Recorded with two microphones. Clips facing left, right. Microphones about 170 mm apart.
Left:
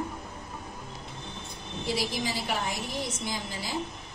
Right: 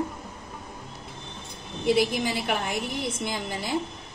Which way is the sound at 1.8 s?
60° right (ahead or behind).